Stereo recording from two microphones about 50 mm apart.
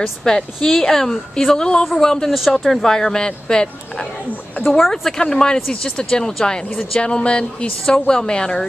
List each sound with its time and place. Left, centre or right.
0.2 s speech: centre
2.2 s speech: centre
4.6 s speech: centre
5.2 s speech: centre